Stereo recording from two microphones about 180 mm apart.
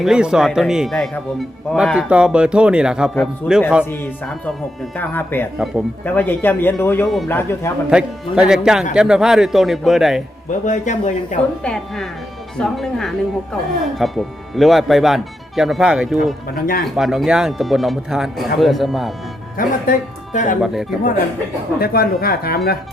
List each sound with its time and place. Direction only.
0.0 s speech: 5° right (ahead or behind)
3.8 s speech: 10° left (ahead or behind)
7.9 s speech: 5° right (ahead or behind)
10.7 s speech: 45° left (ahead or behind)
11.6 s speech: 5° left (ahead or behind)
16.6 s speech: 55° left (ahead or behind)
16.8 s speech: centre (ahead or behind)
19.5 s speech: 45° left (ahead or behind)
21.8 s speech: 55° left (ahead or behind)